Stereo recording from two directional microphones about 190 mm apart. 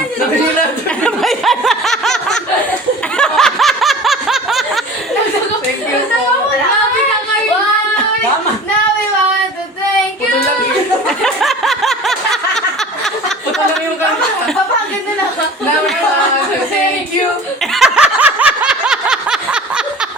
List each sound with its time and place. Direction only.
0.9 s a sound: 5° left (ahead or behind)
3.2 s snicker: centre (ahead or behind)
11.2 s snicker: centre (ahead or behind)
17.7 s snicker: 5° right (ahead or behind)